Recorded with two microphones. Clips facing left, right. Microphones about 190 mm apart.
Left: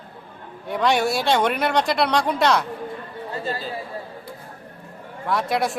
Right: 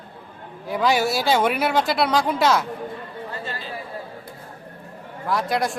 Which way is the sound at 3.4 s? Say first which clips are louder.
Left 5 dB; 35° left (ahead or behind).